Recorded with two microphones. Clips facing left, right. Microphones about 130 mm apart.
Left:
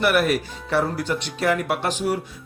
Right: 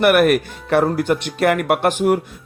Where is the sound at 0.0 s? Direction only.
60° right (ahead or behind).